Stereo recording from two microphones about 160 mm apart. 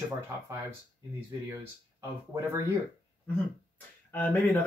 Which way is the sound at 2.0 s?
15° right (ahead or behind).